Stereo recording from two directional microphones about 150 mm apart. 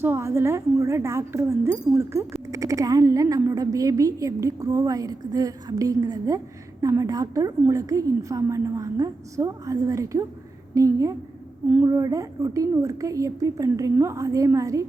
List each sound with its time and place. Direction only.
0.0 s speech: 15° right (ahead or behind)